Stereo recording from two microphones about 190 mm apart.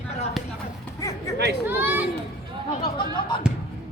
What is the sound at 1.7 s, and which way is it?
Speech, 10° right (ahead or behind).